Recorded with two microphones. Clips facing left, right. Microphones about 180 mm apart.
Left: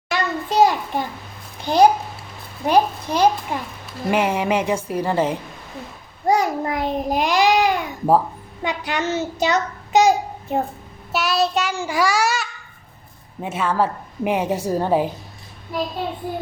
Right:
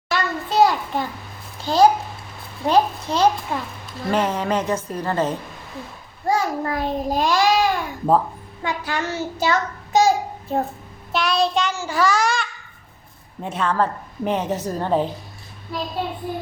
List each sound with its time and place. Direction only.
0.1 s a sound: 15° left (ahead or behind)
1.6 s a child's voice: 15° left (ahead or behind)
11.1 s child singing: 5° left (ahead or behind)
11.7 s a woman's voice: 15° left (ahead or behind)